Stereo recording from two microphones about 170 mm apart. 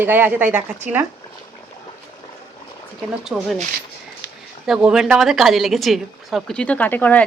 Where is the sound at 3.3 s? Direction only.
Centre (ahead or behind).